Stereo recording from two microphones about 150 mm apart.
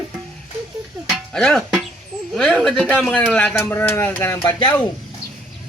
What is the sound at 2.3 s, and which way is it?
Speech, 5° left (ahead or behind).